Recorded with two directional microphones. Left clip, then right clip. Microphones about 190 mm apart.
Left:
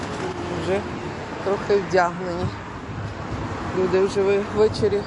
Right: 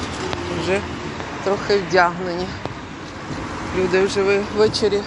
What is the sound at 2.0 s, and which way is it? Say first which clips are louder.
Speech: right 4 dB; 10° right (ahead or behind).